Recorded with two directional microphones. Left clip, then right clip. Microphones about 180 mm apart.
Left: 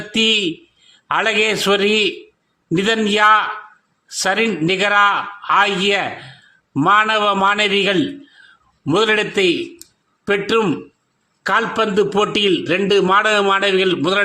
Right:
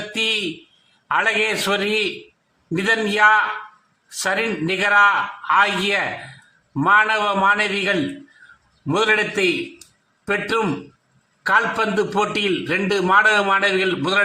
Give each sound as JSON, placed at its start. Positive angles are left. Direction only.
{"t": 1.0, "sound": "a man's voice", "side_deg": 30}